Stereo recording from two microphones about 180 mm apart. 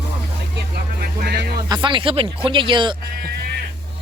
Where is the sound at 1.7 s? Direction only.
25° right (ahead or behind).